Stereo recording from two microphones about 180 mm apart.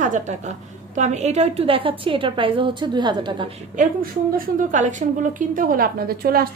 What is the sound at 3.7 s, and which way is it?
A woman's voice, 50° right (ahead or behind).